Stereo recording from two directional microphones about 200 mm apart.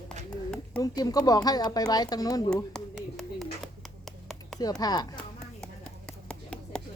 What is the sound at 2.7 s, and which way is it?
Hands, centre (ahead or behind).